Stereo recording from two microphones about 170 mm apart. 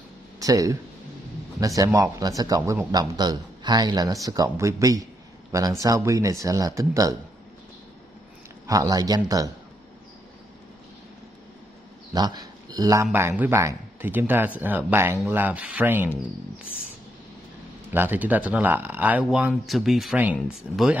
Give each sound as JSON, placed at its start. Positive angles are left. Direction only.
{"t": 0.4, "sound": "speech", "side_deg": -20}
{"t": 1.8, "sound": "speech", "side_deg": -20}
{"t": 8.6, "sound": "speech", "side_deg": -20}
{"t": 12.1, "sound": "speech", "side_deg": -25}
{"t": 17.9, "sound": "speech", "side_deg": -10}